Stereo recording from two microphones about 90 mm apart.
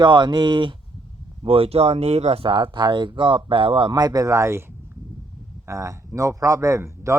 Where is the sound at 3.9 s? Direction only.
45° right (ahead or behind).